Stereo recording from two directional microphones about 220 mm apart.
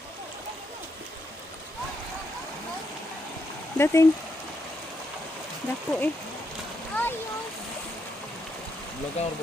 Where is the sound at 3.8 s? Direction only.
10° left (ahead or behind).